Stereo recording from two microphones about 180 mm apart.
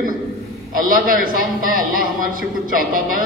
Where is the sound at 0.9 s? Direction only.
50° right (ahead or behind).